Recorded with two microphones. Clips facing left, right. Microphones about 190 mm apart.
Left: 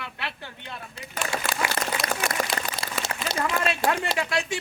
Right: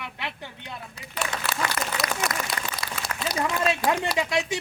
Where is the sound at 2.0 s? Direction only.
30° left (ahead or behind).